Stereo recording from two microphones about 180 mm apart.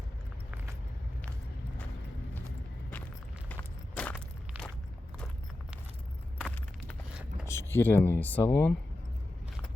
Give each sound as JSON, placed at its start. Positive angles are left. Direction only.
{"t": 3.5, "sound": "walk", "side_deg": 5}
{"t": 6.4, "sound": "a sound", "side_deg": 5}
{"t": 7.4, "sound": "speech", "side_deg": 15}